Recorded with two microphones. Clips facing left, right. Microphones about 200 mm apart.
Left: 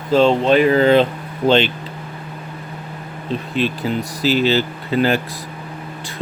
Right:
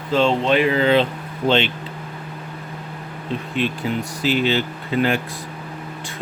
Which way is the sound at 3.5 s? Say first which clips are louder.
Left 2 dB; 35° left (ahead or behind).